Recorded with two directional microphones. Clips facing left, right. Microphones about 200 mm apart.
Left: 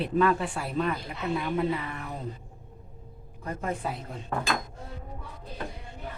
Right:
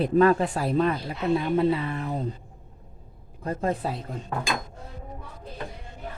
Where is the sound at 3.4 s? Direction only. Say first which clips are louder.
Right 5 dB; 30° right (ahead or behind).